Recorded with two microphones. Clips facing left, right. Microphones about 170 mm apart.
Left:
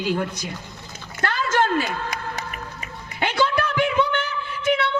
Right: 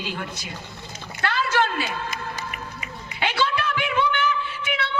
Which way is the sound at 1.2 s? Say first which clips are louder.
Left 1 dB; 45° left (ahead or behind).